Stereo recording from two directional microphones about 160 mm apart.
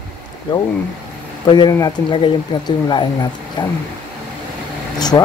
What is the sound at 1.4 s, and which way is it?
Speech, 25° left (ahead or behind).